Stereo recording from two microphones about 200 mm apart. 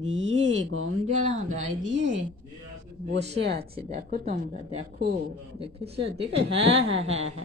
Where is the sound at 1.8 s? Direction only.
65° right (ahead or behind).